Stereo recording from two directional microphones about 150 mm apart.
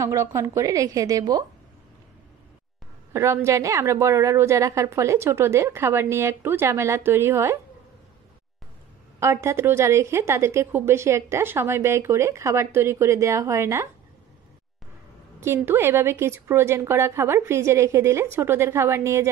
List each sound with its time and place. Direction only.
0.0 s a woman's voice: 20° right (ahead or behind)
3.1 s a woman's voice: 15° right (ahead or behind)
9.2 s a woman's voice: 20° right (ahead or behind)
15.4 s a woman's voice: 15° right (ahead or behind)